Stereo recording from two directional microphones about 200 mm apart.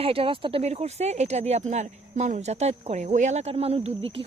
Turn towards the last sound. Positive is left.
turn(degrees=-30)  # may be behind; listen again after turning